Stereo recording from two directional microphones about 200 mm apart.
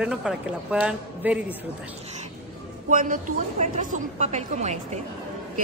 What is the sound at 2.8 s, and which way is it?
A woman's voice, 40° right (ahead or behind).